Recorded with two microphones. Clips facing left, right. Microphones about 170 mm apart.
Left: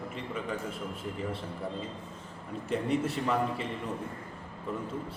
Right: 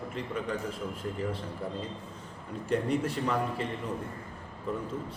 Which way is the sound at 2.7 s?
5° left (ahead or behind).